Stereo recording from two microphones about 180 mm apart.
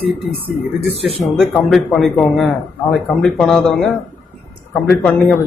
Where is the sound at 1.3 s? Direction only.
Centre (ahead or behind).